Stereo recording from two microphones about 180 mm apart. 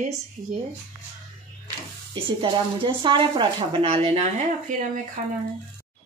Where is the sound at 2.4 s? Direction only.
25° right (ahead or behind).